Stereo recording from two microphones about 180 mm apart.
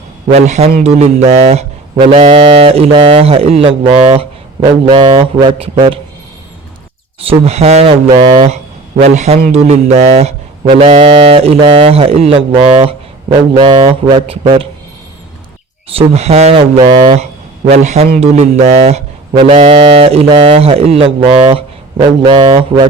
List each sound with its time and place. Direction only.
0.3 s speech: 40° right (ahead or behind)
7.2 s speech: 35° right (ahead or behind)
16.0 s speech: 35° right (ahead or behind)